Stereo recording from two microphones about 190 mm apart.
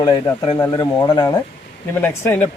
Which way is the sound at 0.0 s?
20° left (ahead or behind).